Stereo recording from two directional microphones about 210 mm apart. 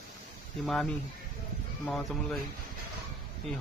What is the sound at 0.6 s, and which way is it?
Speech, centre (ahead or behind).